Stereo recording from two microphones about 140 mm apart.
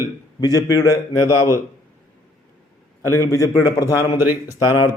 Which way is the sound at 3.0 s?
20° left (ahead or behind).